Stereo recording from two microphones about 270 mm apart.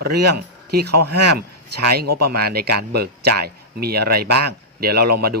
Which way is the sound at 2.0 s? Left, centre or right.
Right.